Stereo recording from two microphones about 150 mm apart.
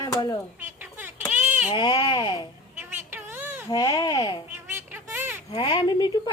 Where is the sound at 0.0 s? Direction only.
25° left (ahead or behind).